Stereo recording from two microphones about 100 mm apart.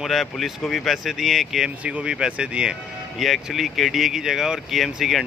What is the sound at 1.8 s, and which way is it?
Speech, 10° right (ahead or behind).